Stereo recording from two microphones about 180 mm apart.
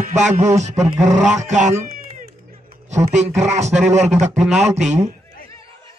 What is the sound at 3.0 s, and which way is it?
Speech, 40° right (ahead or behind).